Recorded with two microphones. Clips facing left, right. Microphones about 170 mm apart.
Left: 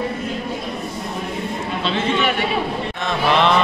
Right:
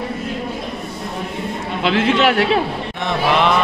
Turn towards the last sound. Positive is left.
turn(degrees=-90)